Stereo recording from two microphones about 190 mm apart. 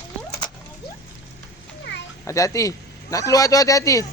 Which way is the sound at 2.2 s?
15° left (ahead or behind).